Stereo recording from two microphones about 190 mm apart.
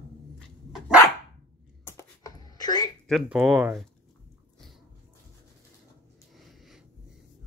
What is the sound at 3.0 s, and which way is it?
Speech, 5° right (ahead or behind).